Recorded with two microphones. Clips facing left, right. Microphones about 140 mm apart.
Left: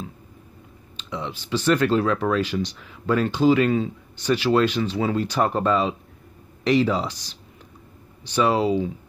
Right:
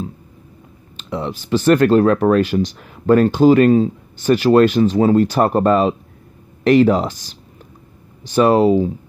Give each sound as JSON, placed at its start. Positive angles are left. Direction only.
{"t": 0.9, "sound": "speech", "side_deg": -45}